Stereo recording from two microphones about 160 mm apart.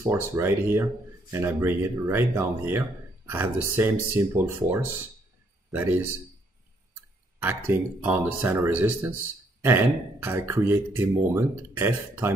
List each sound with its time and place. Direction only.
0.0 s speech: 15° right (ahead or behind)
7.3 s speech: 10° right (ahead or behind)
10.2 s speech: 15° right (ahead or behind)